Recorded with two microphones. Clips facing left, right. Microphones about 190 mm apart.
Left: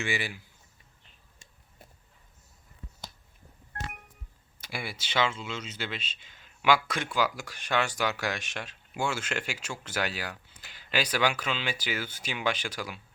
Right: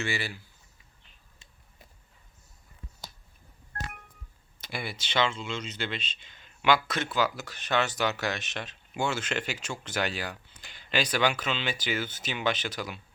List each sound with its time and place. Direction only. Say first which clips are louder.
0.0 s speech: even; 15° left (ahead or behind)
4.6 s speech: right 1 dB; 10° left (ahead or behind)